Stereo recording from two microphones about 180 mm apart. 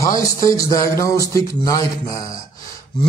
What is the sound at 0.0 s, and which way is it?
A man's voice, 20° left (ahead or behind).